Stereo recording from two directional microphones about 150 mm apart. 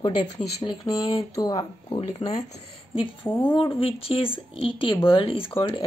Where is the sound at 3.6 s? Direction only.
35° left (ahead or behind).